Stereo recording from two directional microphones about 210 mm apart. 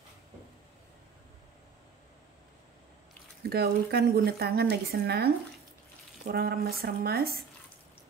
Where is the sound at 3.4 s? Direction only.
50° right (ahead or behind).